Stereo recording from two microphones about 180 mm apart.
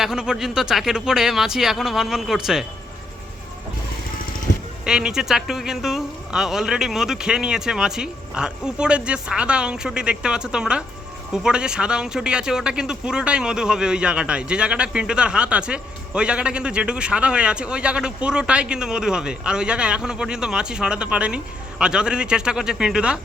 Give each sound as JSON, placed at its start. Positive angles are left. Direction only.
{"t": 0.0, "sound": "speech", "side_deg": -5}
{"t": 4.5, "sound": "a sound", "side_deg": 45}
{"t": 4.9, "sound": "speech", "side_deg": -5}